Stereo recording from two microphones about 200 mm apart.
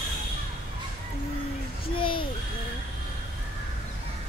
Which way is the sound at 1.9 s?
25° left (ahead or behind).